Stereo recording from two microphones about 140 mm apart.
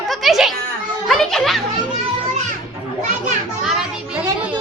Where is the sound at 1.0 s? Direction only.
Centre (ahead or behind).